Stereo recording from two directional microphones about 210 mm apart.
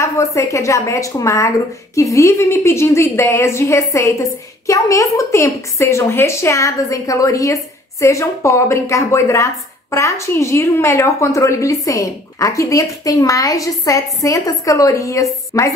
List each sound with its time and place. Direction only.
0.0 s a woman's voice: 15° left (ahead or behind)